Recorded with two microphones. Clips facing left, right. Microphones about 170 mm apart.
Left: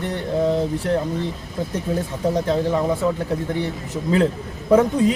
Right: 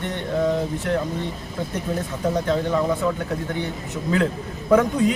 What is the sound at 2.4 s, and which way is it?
A man's voice, 30° left (ahead or behind).